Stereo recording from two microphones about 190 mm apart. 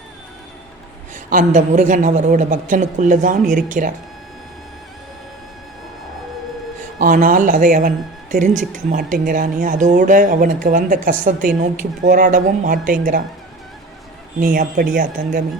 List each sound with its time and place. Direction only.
1.1 s a woman's voice: 40° right (ahead or behind)
7.0 s speech: 45° right (ahead or behind)
14.3 s speech: 45° right (ahead or behind)